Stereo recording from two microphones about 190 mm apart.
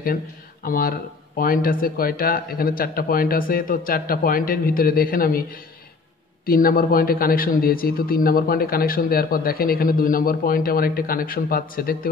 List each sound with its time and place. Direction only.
0.7 s a man's voice: 50° left (ahead or behind)
6.4 s a man's voice: 50° left (ahead or behind)